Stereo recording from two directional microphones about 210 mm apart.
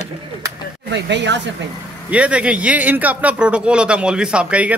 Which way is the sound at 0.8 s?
55° right (ahead or behind).